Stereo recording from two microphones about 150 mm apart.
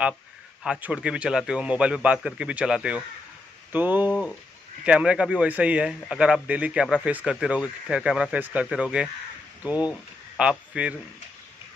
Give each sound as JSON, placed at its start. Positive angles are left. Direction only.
{"t": 0.7, "sound": "speech", "side_deg": -5}